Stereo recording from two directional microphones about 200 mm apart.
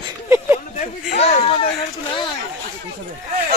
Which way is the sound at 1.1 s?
30° left (ahead or behind).